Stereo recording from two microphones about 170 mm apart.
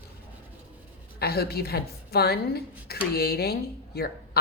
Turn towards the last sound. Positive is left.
turn(degrees=65)  # may be behind; listen again after turning